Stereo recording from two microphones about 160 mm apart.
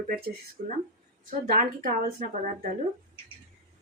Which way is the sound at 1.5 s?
65° right (ahead or behind).